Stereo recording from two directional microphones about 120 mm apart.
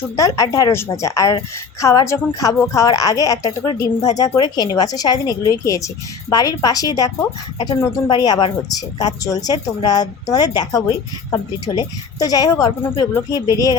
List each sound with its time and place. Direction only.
0.2 s a woman's voice: 30° left (ahead or behind)